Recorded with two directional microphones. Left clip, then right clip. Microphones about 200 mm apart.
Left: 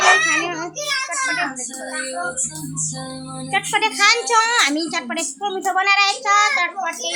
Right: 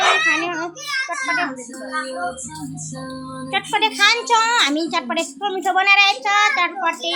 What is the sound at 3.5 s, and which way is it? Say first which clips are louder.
A woman's voice: even; 5° left (ahead or behind).